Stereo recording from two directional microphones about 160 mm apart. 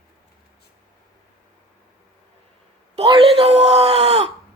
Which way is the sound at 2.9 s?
35° right (ahead or behind).